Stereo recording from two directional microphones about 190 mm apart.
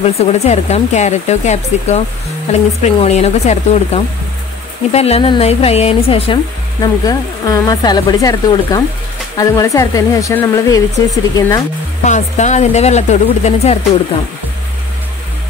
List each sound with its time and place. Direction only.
0.0 s speech: 35° left (ahead or behind); by 11.6 s 20° left (ahead or behind)
12.0 s speech: 40° left (ahead or behind)